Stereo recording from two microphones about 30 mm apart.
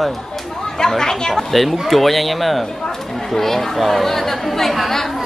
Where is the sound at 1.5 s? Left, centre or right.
Centre.